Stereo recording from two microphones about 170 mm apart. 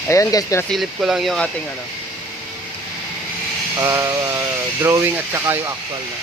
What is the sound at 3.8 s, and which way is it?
Speech, 15° right (ahead or behind).